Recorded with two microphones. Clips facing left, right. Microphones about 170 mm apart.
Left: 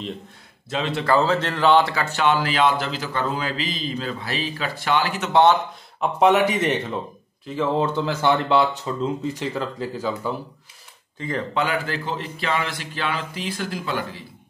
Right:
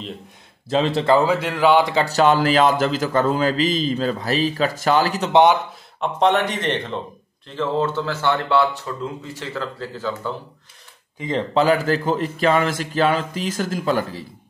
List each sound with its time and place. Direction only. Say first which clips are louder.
0.7 s a man's voice: right 6 dB; 35° right (ahead or behind)
1.0 s speech: left 1 dB; 15° right (ahead or behind)
2.0 s a man's voice: right 5 dB; 40° right (ahead or behind)
5.3 s speech: right 2 dB; 15° right (ahead or behind)
5.9 s speech: left 1 dB; 5° left (ahead or behind)
11.1 s speech: right 4 dB; 20° right (ahead or behind)
11.5 s a man's voice: right 9 dB; 35° right (ahead or behind)